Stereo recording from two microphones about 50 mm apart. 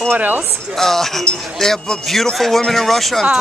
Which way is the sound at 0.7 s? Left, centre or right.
Centre.